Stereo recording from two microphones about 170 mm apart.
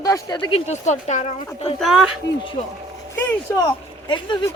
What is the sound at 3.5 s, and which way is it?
Speech, 25° left (ahead or behind).